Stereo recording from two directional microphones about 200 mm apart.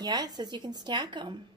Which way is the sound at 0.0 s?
20° right (ahead or behind).